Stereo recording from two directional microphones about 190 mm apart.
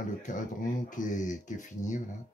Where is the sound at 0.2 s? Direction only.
45° left (ahead or behind).